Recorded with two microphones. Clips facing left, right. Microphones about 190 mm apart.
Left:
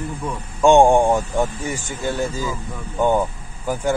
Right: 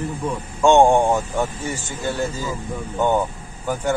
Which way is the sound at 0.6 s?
15° left (ahead or behind).